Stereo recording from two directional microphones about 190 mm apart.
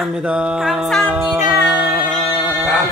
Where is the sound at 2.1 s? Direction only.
5° right (ahead or behind).